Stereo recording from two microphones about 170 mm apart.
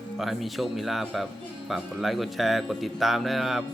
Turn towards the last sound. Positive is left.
turn(degrees=0)  # may be behind; listen again after turning